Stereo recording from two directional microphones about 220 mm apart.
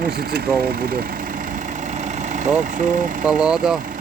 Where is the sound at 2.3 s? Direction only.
35° right (ahead or behind).